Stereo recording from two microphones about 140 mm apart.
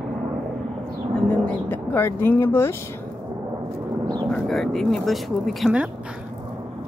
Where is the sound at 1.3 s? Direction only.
15° left (ahead or behind).